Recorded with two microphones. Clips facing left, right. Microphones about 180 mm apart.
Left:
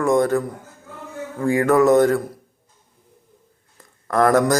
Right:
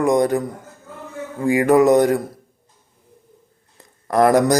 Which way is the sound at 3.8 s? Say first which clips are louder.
Right 2 dB; 20° right (ahead or behind).